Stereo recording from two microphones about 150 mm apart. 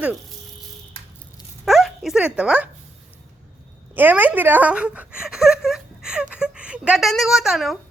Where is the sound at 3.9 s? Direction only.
10° right (ahead or behind).